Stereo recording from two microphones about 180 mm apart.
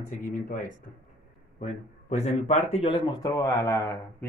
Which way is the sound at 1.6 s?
40° left (ahead or behind).